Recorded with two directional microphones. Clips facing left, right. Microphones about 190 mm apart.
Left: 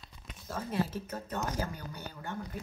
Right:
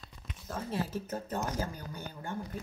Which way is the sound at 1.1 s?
40° right (ahead or behind).